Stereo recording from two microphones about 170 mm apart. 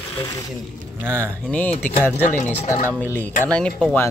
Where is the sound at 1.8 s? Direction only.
10° left (ahead or behind).